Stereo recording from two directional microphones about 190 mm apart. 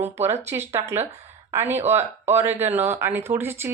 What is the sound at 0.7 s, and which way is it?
Speech, 15° right (ahead or behind).